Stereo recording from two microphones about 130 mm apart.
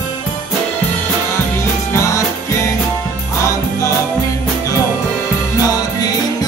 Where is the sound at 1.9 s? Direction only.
20° left (ahead or behind).